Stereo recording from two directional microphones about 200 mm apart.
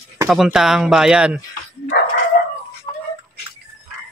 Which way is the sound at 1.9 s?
55° left (ahead or behind).